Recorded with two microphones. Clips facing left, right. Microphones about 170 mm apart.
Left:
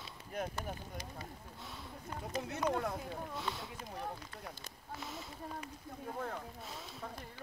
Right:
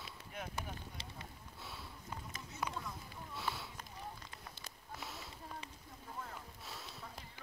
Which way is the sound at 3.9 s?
60° left (ahead or behind).